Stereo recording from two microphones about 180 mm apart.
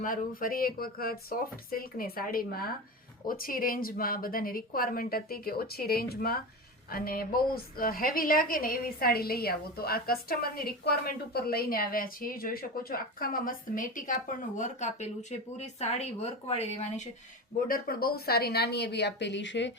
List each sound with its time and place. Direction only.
0.0 s a woman's voice: 50° left (ahead or behind)
17.7 s speech: 55° left (ahead or behind); by 19.7 s 85° left